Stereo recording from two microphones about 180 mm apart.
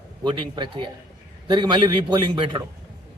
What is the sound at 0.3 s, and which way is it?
Speech, 25° right (ahead or behind).